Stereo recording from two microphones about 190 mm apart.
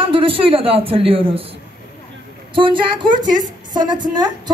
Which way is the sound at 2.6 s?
25° right (ahead or behind).